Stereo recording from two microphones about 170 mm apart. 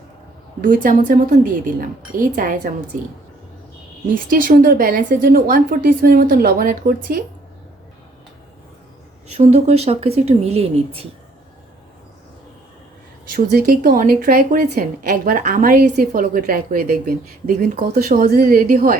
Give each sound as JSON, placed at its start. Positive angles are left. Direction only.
{"t": 0.6, "sound": "speech", "side_deg": -50}
{"t": 4.1, "sound": "a woman's voice", "side_deg": -55}
{"t": 9.3, "sound": "speech", "side_deg": -40}
{"t": 13.3, "sound": "a woman's voice", "side_deg": -65}